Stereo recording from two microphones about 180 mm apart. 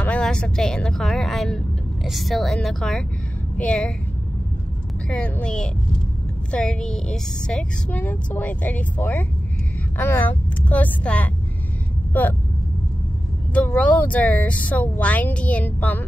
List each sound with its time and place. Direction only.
0.0 s speech: 5° left (ahead or behind)
5.1 s speech: 5° left (ahead or behind)
13.5 s speech: 5° left (ahead or behind)